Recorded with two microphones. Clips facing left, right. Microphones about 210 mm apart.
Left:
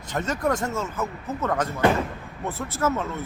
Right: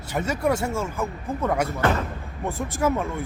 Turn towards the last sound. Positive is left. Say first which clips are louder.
# right 2 dB
turn(degrees=-10)  # may be behind; listen again after turning